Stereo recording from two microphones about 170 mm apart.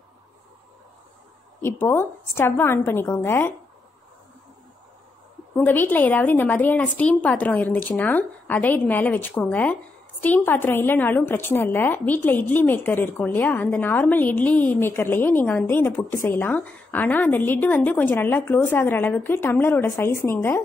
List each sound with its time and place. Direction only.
1.6 s a woman's voice: 15° left (ahead or behind)
5.6 s a woman's voice: 10° left (ahead or behind)